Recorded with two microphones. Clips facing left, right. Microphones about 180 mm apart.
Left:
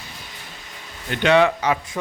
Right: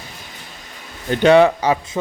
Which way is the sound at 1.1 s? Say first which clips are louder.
Right 5 dB; 35° right (ahead or behind).